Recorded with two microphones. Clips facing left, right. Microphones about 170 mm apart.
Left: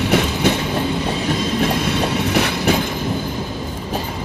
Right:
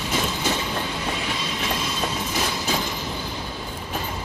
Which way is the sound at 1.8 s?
65° left (ahead or behind).